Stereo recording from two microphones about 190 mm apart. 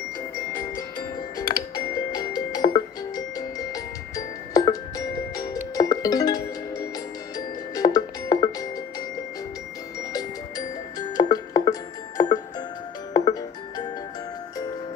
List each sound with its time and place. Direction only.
0.6 s music: 20° left (ahead or behind)
7.3 s glockenspiel: 20° left (ahead or behind)
11.0 s music: 20° left (ahead or behind)